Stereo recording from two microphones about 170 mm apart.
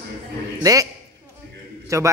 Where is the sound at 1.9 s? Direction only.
20° right (ahead or behind).